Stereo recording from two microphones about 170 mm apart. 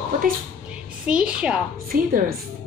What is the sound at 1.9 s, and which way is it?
Speech, 60° right (ahead or behind).